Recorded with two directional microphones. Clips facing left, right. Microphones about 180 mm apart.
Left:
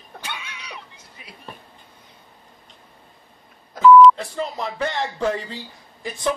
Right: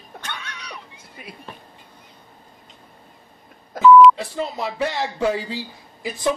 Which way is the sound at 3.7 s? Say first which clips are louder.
Even; 5° right (ahead or behind).